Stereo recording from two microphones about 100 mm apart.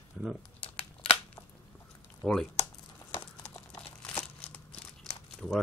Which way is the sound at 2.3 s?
5° left (ahead or behind).